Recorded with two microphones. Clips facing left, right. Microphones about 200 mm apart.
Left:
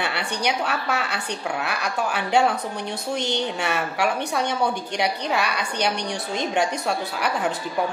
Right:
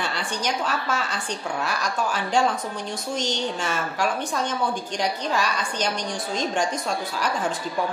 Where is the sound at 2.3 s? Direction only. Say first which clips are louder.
Left 3 dB; 65° left (ahead or behind).